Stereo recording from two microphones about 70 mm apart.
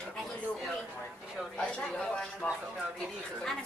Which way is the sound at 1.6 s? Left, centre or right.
Centre.